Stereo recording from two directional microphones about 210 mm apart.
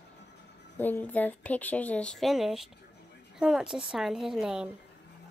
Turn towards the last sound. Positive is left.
turn(degrees=0)  # may be behind; listen again after turning